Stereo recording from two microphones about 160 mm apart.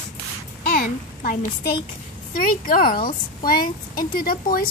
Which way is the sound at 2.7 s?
65° left (ahead or behind).